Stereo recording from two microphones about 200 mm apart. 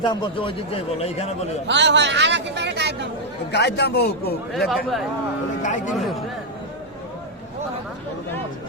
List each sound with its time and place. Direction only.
0.0 s speech: 25° left (ahead or behind)
1.6 s speech: 60° right (ahead or behind)
3.5 s a man's voice: 55° left (ahead or behind)
4.5 s speech: centre (ahead or behind)
5.6 s speech: 40° left (ahead or behind)